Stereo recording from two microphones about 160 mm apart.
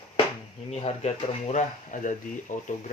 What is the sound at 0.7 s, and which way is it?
Speech, 40° left (ahead or behind).